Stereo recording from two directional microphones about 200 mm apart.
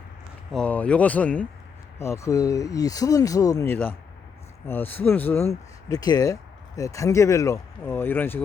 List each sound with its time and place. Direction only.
0.5 s speech: 5° left (ahead or behind)